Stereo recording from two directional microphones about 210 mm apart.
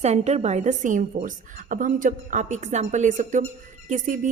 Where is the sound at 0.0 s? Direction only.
30° right (ahead or behind).